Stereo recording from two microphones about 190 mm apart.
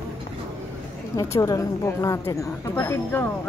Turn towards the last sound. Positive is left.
turn(degrees=10)  # may be behind; listen again after turning